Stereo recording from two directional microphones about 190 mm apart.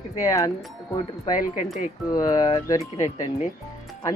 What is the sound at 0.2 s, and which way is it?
Speech, 15° left (ahead or behind).